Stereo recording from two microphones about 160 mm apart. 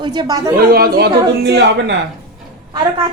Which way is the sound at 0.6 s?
70° right (ahead or behind).